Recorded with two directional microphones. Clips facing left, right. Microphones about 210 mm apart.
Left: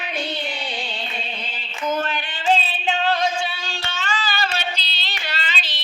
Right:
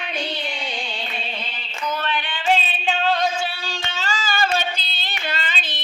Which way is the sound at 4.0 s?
40° right (ahead or behind).